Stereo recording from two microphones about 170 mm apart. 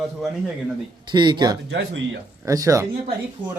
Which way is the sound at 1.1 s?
25° right (ahead or behind).